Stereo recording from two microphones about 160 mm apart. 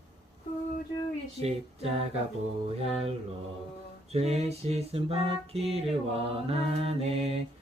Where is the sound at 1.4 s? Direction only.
40° right (ahead or behind).